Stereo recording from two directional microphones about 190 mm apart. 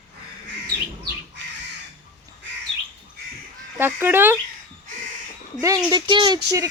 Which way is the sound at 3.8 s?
10° right (ahead or behind).